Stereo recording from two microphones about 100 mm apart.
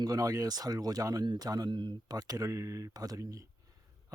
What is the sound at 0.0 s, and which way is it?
Speech, 40° right (ahead or behind).